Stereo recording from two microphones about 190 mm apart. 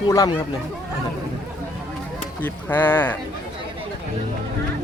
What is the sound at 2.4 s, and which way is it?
Speech, 10° left (ahead or behind).